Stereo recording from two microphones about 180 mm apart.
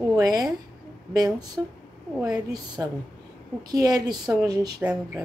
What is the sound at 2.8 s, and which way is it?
A woman's voice, 15° right (ahead or behind).